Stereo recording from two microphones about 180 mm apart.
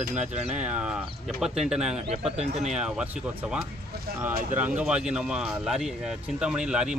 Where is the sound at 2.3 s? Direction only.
35° right (ahead or behind).